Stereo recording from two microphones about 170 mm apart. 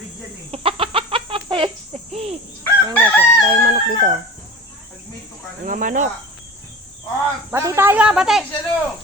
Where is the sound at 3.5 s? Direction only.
50° right (ahead or behind).